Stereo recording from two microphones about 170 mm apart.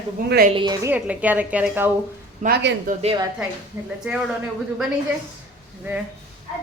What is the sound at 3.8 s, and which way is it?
Speech, 10° right (ahead or behind).